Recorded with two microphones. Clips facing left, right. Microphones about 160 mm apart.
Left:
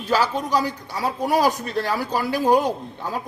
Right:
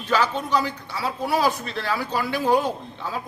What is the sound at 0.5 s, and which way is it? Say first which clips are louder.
Speech: left 1 dB; 40° left (ahead or behind).